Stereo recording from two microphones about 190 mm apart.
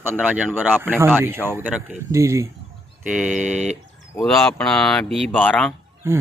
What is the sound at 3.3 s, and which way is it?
Speech, 40° right (ahead or behind).